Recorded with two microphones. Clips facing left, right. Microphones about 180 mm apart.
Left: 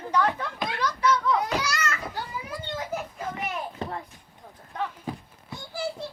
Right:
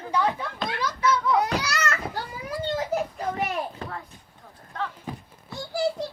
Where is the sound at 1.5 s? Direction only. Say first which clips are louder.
Right 1 dB; 65° right (ahead or behind).